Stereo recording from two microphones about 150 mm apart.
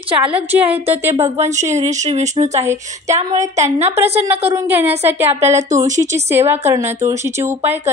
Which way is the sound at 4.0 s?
45° right (ahead or behind).